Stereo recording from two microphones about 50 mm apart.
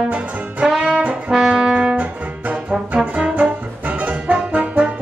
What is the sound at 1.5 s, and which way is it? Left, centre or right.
Music, centre.